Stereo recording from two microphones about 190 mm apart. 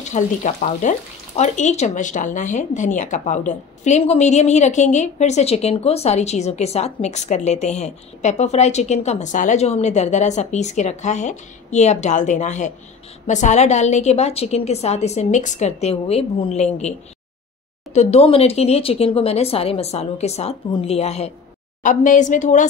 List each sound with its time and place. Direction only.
0.0 s speech: 40° left (ahead or behind)
17.9 s speech: 35° left (ahead or behind)